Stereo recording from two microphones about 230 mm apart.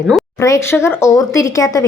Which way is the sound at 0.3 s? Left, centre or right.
Centre.